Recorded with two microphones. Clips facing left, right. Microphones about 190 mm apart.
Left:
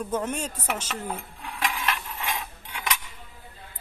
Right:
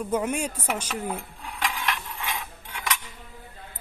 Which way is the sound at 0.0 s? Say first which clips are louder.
Right 2 dB; 10° right (ahead or behind).